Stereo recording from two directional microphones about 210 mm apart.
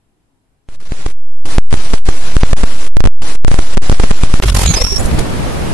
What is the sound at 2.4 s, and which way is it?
Static, 90° right.